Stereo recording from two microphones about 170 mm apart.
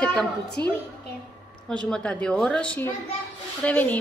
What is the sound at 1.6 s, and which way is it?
Speech, 5° left (ahead or behind).